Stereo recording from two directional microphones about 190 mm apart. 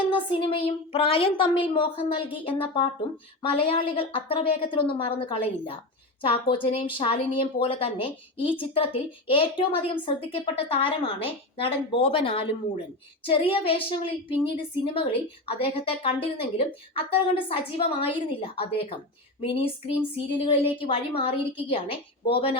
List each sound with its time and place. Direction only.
0.1 s a woman's voice: 25° left (ahead or behind)